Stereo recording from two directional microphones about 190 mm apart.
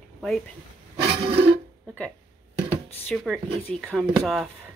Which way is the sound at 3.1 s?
Centre (ahead or behind).